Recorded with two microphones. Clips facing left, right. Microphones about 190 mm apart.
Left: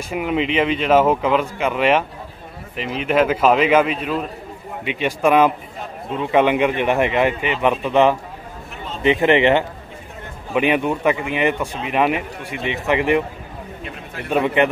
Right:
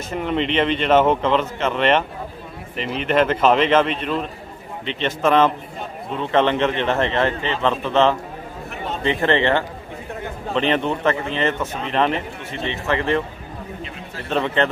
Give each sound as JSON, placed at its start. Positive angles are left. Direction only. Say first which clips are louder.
{"t": 0.1, "sound": "a man's voice", "louder": "left 1 dB", "side_deg": 5}
{"t": 14.3, "sound": "speech", "louder": "left 3 dB", "side_deg": 10}